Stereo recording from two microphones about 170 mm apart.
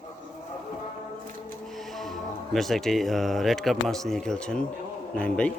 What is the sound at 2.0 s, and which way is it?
A man's voice, centre (ahead or behind).